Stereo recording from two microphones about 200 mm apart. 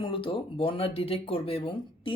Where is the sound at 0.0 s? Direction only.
25° left (ahead or behind).